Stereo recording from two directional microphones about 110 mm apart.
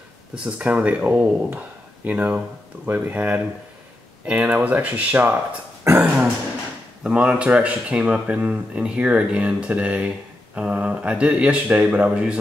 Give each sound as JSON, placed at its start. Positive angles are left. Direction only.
{"t": 0.3, "sound": "speech", "side_deg": -10}